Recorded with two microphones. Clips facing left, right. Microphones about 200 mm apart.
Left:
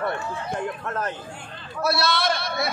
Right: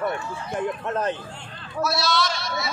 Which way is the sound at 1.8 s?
60° left (ahead or behind).